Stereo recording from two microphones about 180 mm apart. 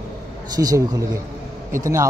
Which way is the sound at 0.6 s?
20° right (ahead or behind).